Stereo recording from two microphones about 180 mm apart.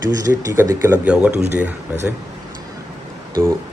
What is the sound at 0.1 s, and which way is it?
Speech, 20° right (ahead or behind).